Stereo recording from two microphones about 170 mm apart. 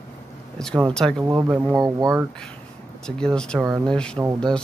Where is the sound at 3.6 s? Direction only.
20° right (ahead or behind).